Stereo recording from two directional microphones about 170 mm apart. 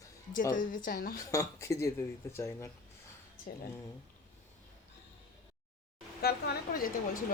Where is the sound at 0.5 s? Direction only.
55° left (ahead or behind).